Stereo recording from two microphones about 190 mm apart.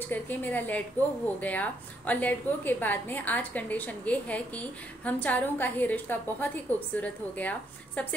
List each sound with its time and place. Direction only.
0.1 s a woman's voice: 10° left (ahead or behind)